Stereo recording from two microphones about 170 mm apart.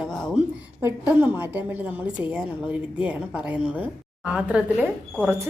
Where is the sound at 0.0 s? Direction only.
Centre (ahead or behind).